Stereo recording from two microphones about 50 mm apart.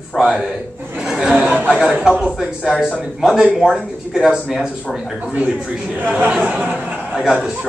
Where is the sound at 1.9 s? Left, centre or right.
Centre.